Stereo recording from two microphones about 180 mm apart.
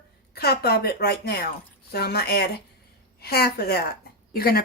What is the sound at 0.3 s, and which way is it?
Speech, 60° left (ahead or behind).